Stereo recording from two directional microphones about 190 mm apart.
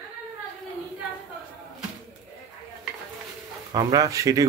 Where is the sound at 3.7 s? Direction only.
20° right (ahead or behind).